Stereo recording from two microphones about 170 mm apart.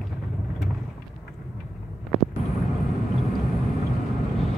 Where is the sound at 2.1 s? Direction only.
Centre (ahead or behind).